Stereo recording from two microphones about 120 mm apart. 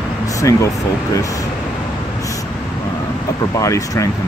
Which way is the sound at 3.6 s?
25° left (ahead or behind).